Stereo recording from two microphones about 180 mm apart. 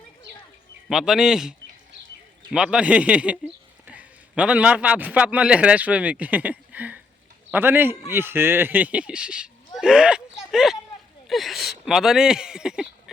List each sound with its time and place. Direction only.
0.9 s a man's voice: centre (ahead or behind)